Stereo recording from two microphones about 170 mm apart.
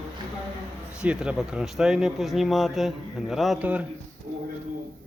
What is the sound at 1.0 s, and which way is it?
Speech, 5° right (ahead or behind).